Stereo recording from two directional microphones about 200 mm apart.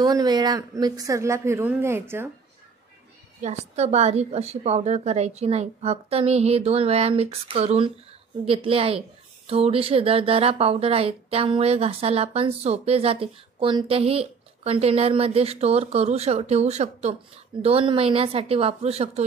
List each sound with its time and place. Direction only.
0.0 s a woman's voice: 20° right (ahead or behind)
3.3 s a woman's voice: 35° right (ahead or behind)